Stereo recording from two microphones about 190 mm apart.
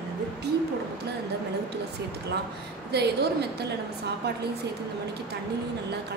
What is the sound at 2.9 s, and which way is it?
Speech, 60° right (ahead or behind).